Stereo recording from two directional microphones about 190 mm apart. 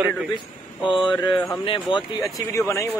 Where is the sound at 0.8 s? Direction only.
25° left (ahead or behind).